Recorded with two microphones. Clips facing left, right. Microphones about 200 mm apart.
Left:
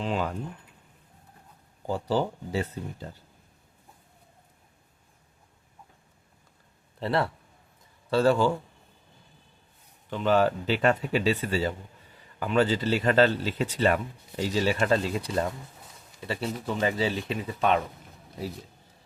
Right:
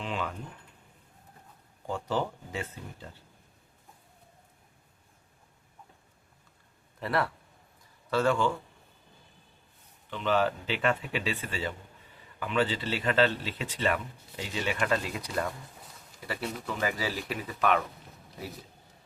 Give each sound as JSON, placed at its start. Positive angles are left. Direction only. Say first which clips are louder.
{"t": 0.0, "sound": "speech", "louder": "left 5 dB", "side_deg": 40}
{"t": 1.9, "sound": "speech", "louder": "left 4 dB", "side_deg": 35}
{"t": 7.0, "sound": "speech", "louder": "left 3 dB", "side_deg": 25}
{"t": 10.1, "sound": "speech", "louder": "left 4 dB", "side_deg": 40}